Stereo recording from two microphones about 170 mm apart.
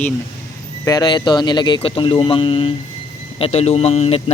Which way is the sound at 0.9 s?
25° left (ahead or behind).